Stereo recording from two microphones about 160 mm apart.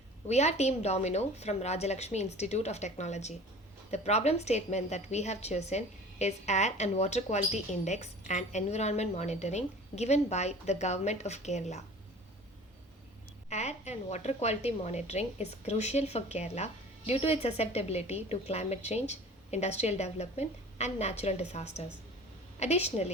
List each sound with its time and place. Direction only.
0.3 s a woman's voice: 45° left (ahead or behind)
13.5 s a woman's voice: 45° left (ahead or behind)